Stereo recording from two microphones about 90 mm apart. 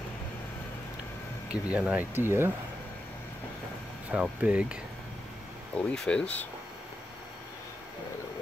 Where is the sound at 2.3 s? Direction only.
25° right (ahead or behind).